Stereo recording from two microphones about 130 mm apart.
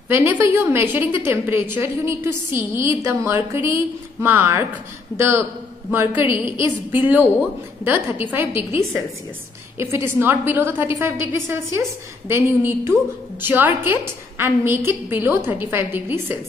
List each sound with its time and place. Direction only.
0.1 s a woman's voice: 15° right (ahead or behind)